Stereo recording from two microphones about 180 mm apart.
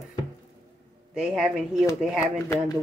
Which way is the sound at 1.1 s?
5° right (ahead or behind).